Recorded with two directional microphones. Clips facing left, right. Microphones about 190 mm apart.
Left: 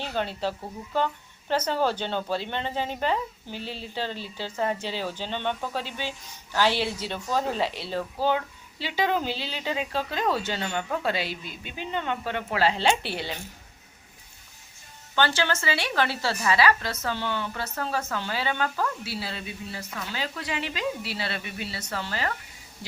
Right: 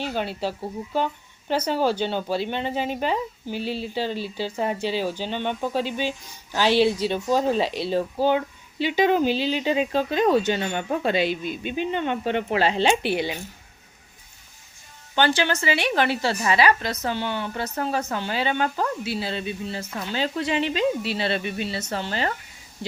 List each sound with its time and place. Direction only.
0.0 s speech: 10° right (ahead or behind)
15.1 s speech: 15° right (ahead or behind)